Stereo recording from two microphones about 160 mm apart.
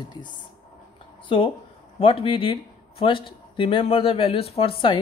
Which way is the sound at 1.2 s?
35° left (ahead or behind).